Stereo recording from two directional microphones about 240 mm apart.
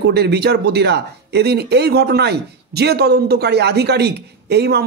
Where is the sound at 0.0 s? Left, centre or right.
Right.